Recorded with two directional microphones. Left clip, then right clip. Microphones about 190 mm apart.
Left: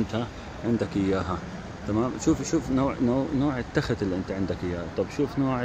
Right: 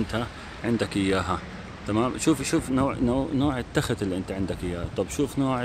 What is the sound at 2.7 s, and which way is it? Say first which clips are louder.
Speech: left 1 dB; 10° right (ahead or behind).